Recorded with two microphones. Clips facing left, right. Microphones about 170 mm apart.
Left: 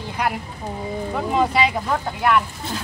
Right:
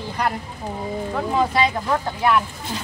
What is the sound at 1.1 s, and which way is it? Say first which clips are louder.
Speech: left 1 dB; 10° left (ahead or behind).